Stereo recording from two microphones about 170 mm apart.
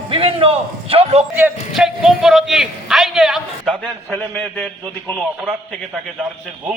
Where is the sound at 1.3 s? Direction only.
5° right (ahead or behind).